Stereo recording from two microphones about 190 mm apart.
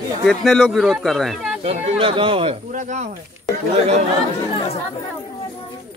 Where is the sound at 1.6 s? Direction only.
35° right (ahead or behind).